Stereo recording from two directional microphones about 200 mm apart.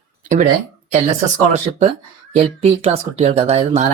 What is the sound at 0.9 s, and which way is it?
Speech, 35° right (ahead or behind).